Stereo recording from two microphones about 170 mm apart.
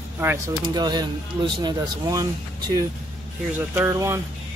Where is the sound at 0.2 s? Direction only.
15° right (ahead or behind).